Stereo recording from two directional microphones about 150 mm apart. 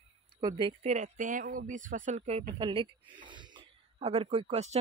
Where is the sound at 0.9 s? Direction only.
60° right (ahead or behind).